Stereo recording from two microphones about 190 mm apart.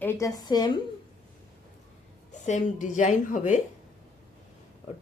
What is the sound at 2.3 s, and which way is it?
Speech, 40° left (ahead or behind).